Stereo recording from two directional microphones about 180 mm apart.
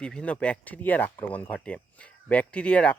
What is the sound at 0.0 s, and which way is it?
Speech, 5° left (ahead or behind).